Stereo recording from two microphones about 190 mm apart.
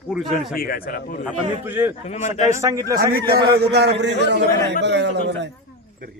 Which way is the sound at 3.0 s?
55° right (ahead or behind).